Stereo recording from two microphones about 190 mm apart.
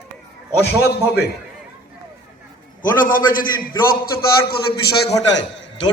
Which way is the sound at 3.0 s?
45° left (ahead or behind).